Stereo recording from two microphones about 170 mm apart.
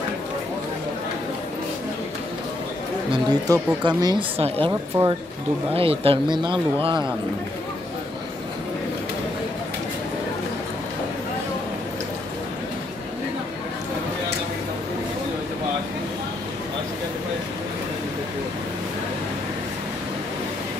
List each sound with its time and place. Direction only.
3.1 s speech: 25° right (ahead or behind)